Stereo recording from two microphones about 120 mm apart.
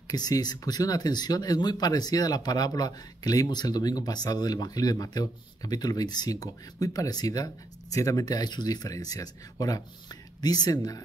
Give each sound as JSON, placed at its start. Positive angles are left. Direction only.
{"t": 0.1, "sound": "speech", "side_deg": 35}